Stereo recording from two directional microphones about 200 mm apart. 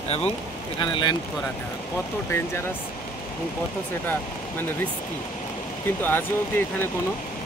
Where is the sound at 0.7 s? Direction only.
25° left (ahead or behind).